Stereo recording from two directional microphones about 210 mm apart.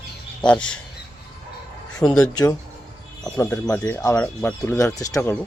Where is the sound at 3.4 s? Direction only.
15° left (ahead or behind).